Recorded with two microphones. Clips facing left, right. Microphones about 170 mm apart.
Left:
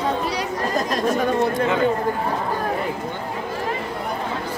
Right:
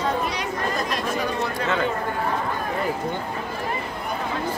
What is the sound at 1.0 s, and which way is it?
Chatter, 40° left (ahead or behind).